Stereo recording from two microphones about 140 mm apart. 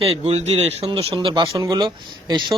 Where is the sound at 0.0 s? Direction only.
50° right (ahead or behind).